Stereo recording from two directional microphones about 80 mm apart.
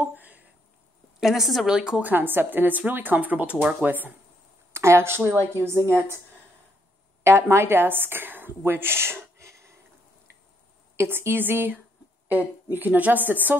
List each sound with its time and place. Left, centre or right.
0.0 s a sound: right
1.2 s a woman's voice: centre
1.8 s speech: centre
4.7 s speech: right
7.2 s a woman's voice: right
11.0 s speech: right